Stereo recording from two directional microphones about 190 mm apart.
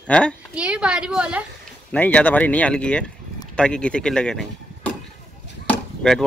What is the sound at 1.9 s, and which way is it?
Speech, 10° left (ahead or behind).